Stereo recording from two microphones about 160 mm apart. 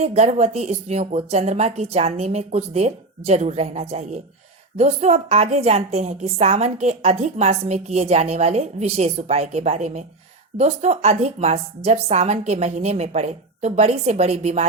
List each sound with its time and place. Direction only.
0.0 s a woman's voice: 45° right (ahead or behind)